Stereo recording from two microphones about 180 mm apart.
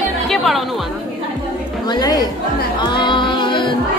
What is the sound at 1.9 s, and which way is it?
Speech, 20° left (ahead or behind).